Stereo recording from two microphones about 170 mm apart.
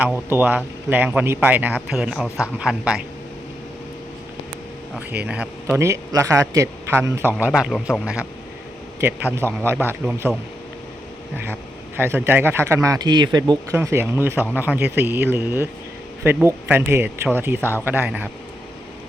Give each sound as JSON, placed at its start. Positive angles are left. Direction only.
{"t": 0.0, "sound": "a woman's voice", "side_deg": -10}
{"t": 5.2, "sound": "speech", "side_deg": -5}
{"t": 5.8, "sound": "a woman's voice", "side_deg": -20}
{"t": 11.9, "sound": "speech", "side_deg": -10}
{"t": 13.7, "sound": "speech", "side_deg": -15}